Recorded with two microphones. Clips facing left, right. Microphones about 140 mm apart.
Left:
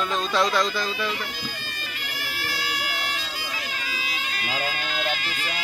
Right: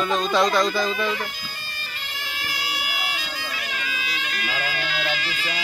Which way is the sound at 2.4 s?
15° right (ahead or behind).